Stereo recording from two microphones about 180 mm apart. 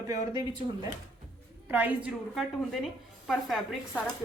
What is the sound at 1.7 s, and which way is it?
Speech, 10° right (ahead or behind).